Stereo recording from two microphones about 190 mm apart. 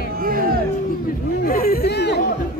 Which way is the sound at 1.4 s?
50° left (ahead or behind).